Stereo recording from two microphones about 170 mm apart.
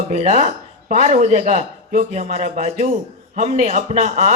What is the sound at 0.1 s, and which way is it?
A man's voice, 40° right (ahead or behind).